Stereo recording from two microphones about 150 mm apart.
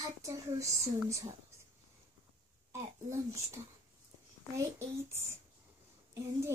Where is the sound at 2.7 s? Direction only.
20° right (ahead or behind).